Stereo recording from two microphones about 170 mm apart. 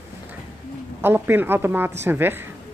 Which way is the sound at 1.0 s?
10° right (ahead or behind).